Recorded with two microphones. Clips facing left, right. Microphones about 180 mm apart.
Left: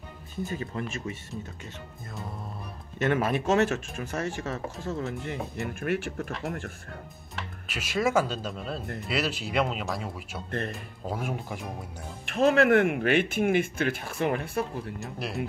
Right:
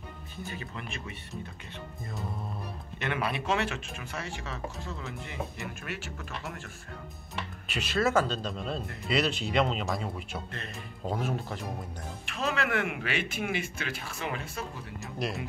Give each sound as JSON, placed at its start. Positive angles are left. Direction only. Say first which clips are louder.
{"t": 0.5, "sound": "speech", "louder": "left 5 dB", "side_deg": 45}
{"t": 3.0, "sound": "speech", "louder": "left 7 dB", "side_deg": 45}
{"t": 7.6, "sound": "speech", "louder": "left 1 dB", "side_deg": 5}
{"t": 12.3, "sound": "speech", "louder": "left 10 dB", "side_deg": 55}
{"t": 15.0, "sound": "speech", "louder": "right 3 dB", "side_deg": 0}